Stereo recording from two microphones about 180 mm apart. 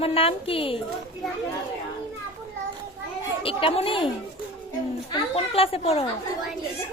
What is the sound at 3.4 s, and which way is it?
Speech, 30° left (ahead or behind).